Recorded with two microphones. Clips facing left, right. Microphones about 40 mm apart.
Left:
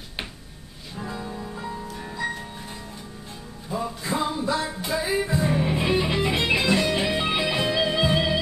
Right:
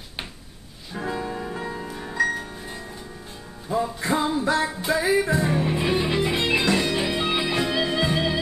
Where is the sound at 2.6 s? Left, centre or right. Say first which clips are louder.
Right 2 dB; centre.